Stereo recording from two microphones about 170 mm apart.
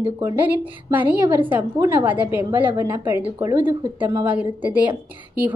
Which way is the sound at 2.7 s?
25° right (ahead or behind).